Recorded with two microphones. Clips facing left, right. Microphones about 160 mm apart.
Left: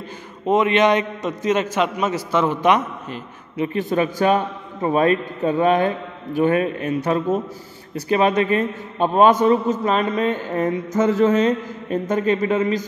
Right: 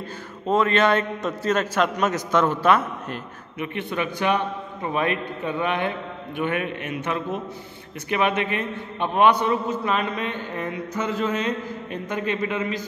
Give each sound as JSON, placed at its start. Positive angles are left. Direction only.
{"t": 0.7, "sound": "a man's voice", "side_deg": 15}
{"t": 3.5, "sound": "a man's voice", "side_deg": 35}